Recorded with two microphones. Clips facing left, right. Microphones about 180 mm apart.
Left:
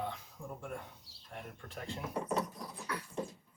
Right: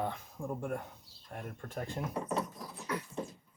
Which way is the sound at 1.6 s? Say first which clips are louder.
Right 4 dB; 45° right (ahead or behind).